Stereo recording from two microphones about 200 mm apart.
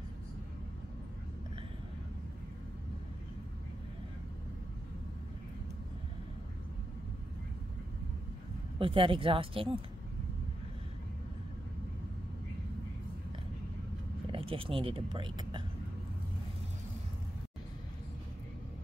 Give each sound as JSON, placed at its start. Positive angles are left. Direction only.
{"t": 8.7, "sound": "speech", "side_deg": -25}
{"t": 14.3, "sound": "speech", "side_deg": -25}